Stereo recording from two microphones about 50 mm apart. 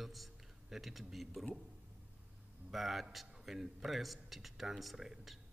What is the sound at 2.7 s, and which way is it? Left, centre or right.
Speech, centre.